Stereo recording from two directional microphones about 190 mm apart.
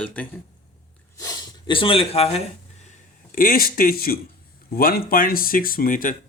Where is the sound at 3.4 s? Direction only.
50° left (ahead or behind).